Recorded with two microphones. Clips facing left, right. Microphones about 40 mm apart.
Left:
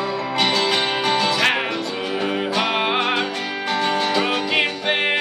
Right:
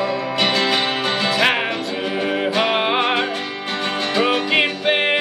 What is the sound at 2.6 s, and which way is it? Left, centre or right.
Music, centre.